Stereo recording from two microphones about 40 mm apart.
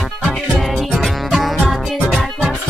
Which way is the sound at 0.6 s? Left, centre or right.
Centre.